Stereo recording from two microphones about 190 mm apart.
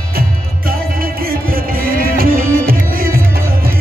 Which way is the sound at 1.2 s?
50° right (ahead or behind).